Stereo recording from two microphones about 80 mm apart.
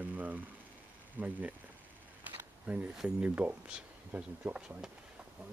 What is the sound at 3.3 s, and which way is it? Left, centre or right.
Speech, right.